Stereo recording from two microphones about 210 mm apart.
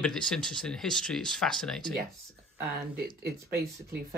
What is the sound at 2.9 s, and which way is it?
Speech, 50° right (ahead or behind).